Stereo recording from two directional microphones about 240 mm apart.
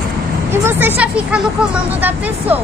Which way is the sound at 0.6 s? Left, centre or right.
Centre.